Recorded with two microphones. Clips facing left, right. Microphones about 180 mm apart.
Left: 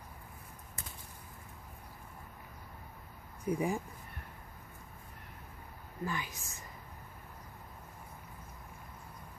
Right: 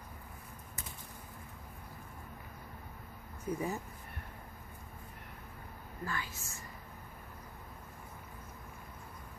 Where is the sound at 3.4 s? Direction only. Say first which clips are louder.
Left 3 dB; 15° left (ahead or behind).